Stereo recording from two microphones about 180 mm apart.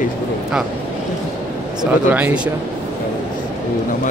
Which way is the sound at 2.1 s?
5° right (ahead or behind).